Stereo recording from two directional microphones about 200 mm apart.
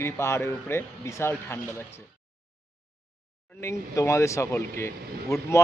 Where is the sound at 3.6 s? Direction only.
15° left (ahead or behind).